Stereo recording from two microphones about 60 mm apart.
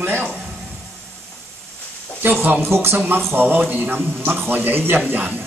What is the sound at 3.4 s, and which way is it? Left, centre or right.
A man's voice, right.